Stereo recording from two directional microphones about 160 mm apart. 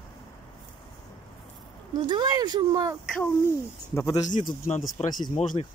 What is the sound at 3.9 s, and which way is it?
Speech, 20° left (ahead or behind).